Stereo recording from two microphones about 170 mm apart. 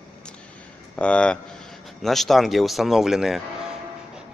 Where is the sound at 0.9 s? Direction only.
5° left (ahead or behind).